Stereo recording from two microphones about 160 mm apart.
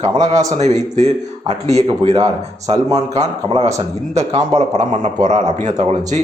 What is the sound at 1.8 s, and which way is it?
A man's voice, 40° right (ahead or behind).